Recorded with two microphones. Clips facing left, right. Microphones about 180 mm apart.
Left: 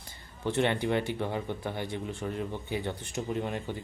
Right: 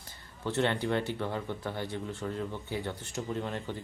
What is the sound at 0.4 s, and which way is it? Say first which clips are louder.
Speech: left 2 dB; 15° left (ahead or behind).